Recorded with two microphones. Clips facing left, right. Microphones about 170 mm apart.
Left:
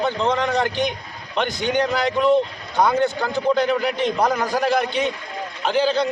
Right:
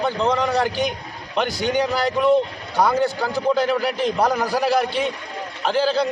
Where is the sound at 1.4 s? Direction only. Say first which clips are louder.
Right 1 dB; 35° right (ahead or behind).